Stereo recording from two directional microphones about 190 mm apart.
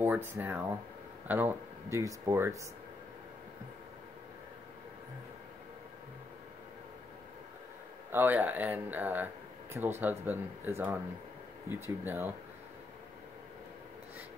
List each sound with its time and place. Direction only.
0.0 s speech: 10° right (ahead or behind)
8.1 s speech: 10° right (ahead or behind)